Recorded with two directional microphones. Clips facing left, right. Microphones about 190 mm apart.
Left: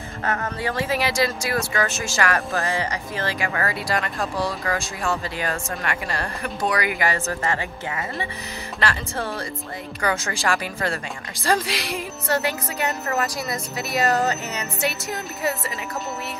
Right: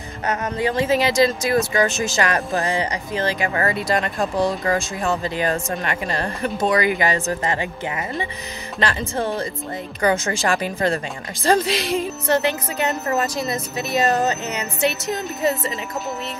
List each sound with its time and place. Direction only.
0.2 s speech: 20° right (ahead or behind)